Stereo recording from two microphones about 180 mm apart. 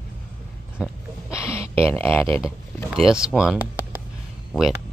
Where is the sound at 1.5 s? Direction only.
15° left (ahead or behind).